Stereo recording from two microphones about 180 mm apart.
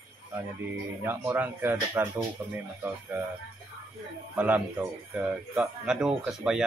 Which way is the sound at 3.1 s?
10° right (ahead or behind).